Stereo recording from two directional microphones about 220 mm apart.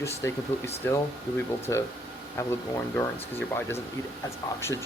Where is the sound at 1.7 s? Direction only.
15° left (ahead or behind).